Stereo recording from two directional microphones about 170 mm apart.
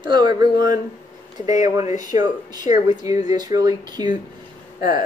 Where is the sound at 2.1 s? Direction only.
20° right (ahead or behind).